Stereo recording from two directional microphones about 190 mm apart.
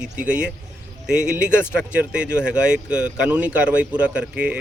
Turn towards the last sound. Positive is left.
turn(degrees=-5)  # may be behind; listen again after turning